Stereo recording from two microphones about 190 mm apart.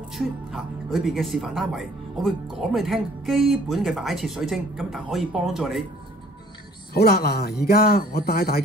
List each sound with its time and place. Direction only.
0.1 s speech: centre (ahead or behind)
6.9 s a man's voice: 55° left (ahead or behind)